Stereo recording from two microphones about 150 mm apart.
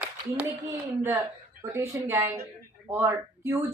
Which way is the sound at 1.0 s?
15° right (ahead or behind).